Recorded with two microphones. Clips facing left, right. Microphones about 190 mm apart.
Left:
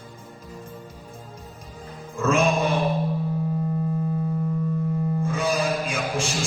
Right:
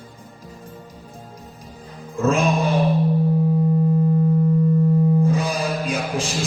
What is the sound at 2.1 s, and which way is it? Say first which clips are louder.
Music: right 2 dB; 35° right (ahead or behind).